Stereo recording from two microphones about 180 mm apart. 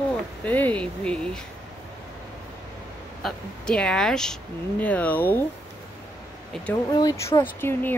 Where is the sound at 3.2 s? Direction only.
5° left (ahead or behind).